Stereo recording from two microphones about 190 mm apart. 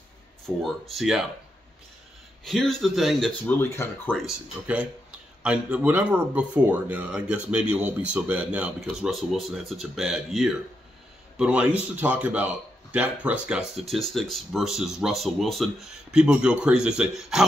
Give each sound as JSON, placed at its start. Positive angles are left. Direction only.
{"t": 0.8, "sound": "speech", "side_deg": 0}
{"t": 2.4, "sound": "speech", "side_deg": 0}
{"t": 3.4, "sound": "speech", "side_deg": 15}
{"t": 4.3, "sound": "speech", "side_deg": -5}